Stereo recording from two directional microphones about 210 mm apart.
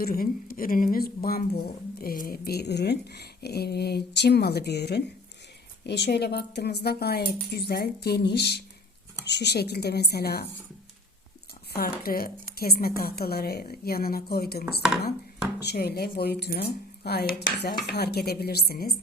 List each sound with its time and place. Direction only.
0.0 s speech: 45° left (ahead or behind)
11.7 s speech: 45° left (ahead or behind)
14.8 s dishes: centre (ahead or behind)
15.6 s speech: 50° left (ahead or behind)